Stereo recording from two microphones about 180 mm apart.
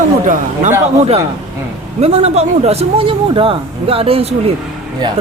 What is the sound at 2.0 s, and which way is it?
Speech, 35° right (ahead or behind).